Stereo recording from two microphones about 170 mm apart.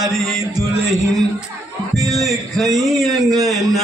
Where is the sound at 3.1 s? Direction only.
20° right (ahead or behind).